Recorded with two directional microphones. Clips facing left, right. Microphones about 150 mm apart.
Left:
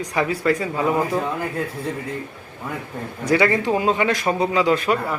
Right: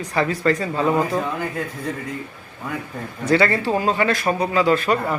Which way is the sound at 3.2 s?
15° left (ahead or behind).